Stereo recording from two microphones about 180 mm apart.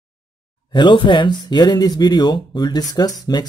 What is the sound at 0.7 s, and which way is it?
Speech, 25° left (ahead or behind).